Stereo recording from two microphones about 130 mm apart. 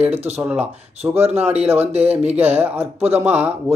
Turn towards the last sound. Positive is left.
turn(degrees=-10)  # may be behind; listen again after turning